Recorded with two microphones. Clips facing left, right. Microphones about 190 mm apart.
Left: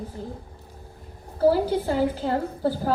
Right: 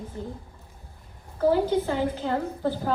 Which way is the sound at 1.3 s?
35° left (ahead or behind).